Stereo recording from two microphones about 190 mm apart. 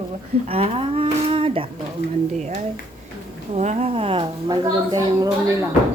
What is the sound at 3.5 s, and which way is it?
A woman's voice, 35° right (ahead or behind).